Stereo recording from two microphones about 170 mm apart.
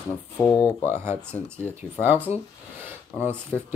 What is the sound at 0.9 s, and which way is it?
Speech, 15° right (ahead or behind).